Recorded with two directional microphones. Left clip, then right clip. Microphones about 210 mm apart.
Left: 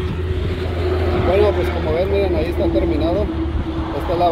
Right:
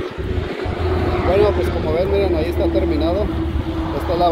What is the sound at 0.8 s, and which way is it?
Vehicle, 45° left (ahead or behind).